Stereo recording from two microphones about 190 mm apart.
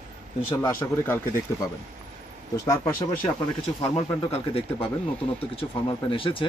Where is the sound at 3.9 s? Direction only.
30° left (ahead or behind).